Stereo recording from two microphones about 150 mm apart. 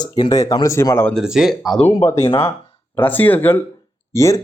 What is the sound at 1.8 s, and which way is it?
Speech, 15° left (ahead or behind).